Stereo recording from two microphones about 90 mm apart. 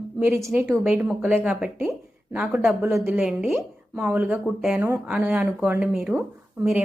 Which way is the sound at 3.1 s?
5° right (ahead or behind).